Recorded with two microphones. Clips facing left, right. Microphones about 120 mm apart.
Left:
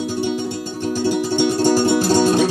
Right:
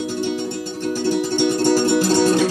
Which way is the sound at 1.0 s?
15° left (ahead or behind).